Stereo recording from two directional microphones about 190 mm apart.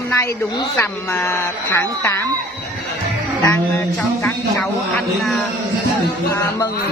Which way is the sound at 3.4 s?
15° left (ahead or behind).